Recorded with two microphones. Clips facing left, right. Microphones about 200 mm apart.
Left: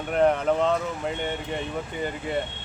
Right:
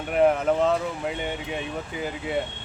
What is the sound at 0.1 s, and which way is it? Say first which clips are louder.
Speech: right 1 dB; 5° right (ahead or behind).